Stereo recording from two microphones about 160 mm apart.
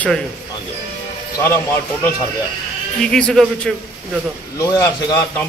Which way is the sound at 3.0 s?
5° left (ahead or behind).